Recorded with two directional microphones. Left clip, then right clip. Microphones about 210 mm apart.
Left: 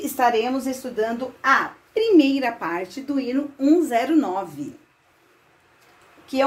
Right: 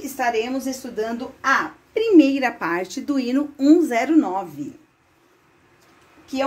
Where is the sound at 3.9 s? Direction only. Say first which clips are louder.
Right 1 dB; 25° right (ahead or behind).